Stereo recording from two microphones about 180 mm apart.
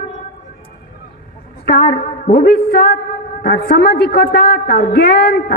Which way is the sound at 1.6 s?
60° left (ahead or behind).